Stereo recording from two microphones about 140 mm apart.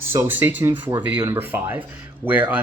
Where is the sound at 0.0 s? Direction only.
20° right (ahead or behind).